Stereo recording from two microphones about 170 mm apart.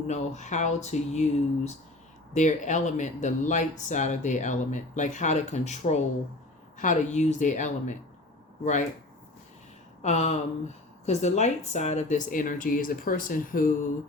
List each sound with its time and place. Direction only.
0.1 s speech: 45° left (ahead or behind)
10.0 s speech: 40° left (ahead or behind)